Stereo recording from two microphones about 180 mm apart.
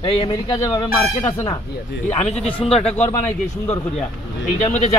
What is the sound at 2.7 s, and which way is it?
Speech, 35° left (ahead or behind).